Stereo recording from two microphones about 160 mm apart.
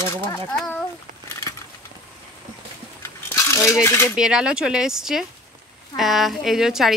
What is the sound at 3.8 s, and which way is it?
Coin, 15° left (ahead or behind).